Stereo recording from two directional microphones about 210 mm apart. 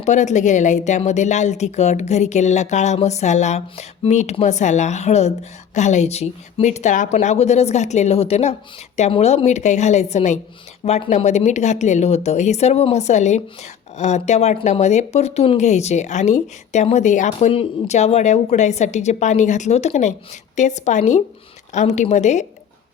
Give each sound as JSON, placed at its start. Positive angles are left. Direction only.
{"t": 0.0, "sound": "speech", "side_deg": 35}